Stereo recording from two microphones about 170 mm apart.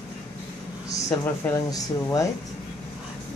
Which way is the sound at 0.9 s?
20° left (ahead or behind).